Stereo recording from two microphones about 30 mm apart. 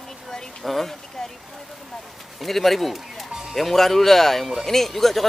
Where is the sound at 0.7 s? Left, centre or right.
Centre.